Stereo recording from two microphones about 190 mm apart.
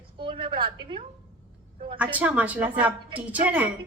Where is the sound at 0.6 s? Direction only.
25° right (ahead or behind).